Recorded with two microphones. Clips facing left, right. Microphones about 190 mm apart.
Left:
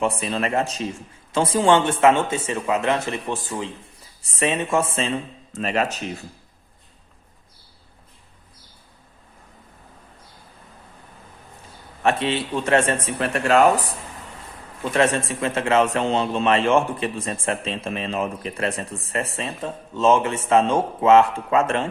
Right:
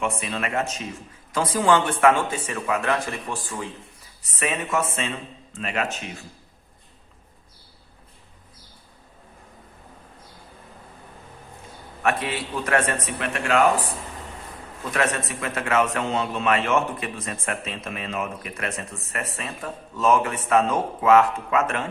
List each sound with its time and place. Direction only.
0.0 s a man's voice: 35° left (ahead or behind)
12.0 s a man's voice: 25° left (ahead or behind)
14.8 s a man's voice: 30° left (ahead or behind)